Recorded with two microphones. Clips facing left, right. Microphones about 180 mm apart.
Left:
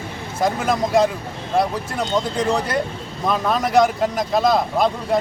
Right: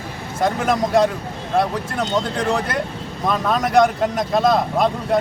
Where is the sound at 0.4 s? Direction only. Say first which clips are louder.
Right 1 dB; centre (ahead or behind).